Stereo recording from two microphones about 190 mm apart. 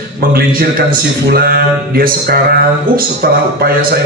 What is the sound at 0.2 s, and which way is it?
A man's voice, 50° right (ahead or behind).